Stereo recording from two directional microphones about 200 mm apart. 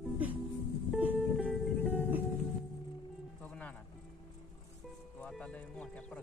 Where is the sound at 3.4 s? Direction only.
10° left (ahead or behind).